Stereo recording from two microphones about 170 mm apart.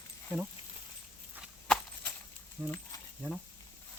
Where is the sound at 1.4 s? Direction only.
5° left (ahead or behind).